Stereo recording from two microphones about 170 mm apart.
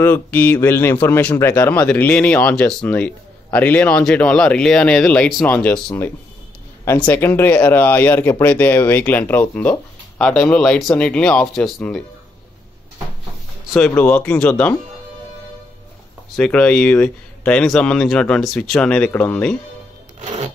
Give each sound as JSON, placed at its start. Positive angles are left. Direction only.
{"t": 0.0, "sound": "speech", "side_deg": 15}
{"t": 13.7, "sound": "speech", "side_deg": 10}
{"t": 16.3, "sound": "speech", "side_deg": 5}
{"t": 20.2, "sound": "a sound", "side_deg": -40}